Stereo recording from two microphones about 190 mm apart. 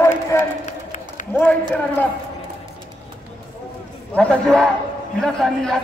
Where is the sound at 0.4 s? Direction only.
40° left (ahead or behind).